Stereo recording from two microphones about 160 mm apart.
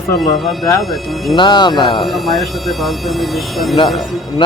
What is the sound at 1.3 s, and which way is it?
Speech, 30° left (ahead or behind).